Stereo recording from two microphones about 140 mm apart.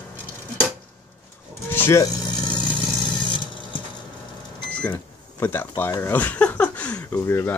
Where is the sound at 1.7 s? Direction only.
15° left (ahead or behind).